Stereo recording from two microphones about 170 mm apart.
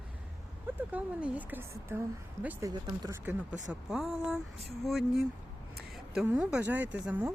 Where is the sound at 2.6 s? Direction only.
25° right (ahead or behind).